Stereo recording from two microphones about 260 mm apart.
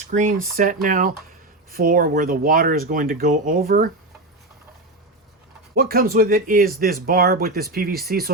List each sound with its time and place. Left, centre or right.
0.1 s speech: right
5.7 s speech: right